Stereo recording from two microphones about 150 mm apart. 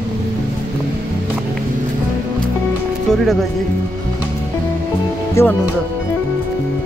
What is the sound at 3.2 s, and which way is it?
Speech, centre (ahead or behind).